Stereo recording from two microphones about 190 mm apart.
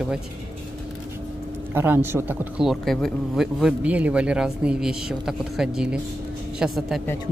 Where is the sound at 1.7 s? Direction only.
10° right (ahead or behind).